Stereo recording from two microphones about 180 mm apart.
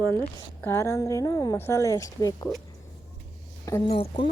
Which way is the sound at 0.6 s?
15° left (ahead or behind).